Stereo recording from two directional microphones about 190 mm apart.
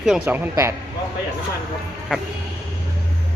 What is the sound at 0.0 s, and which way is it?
Speech, 5° right (ahead or behind).